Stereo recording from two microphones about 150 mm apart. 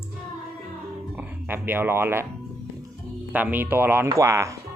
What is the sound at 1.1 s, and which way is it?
Speech, 15° right (ahead or behind).